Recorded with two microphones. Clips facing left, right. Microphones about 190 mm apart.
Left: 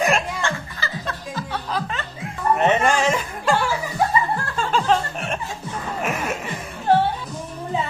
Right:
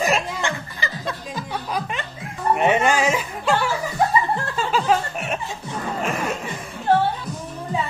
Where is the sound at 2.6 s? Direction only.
10° right (ahead or behind).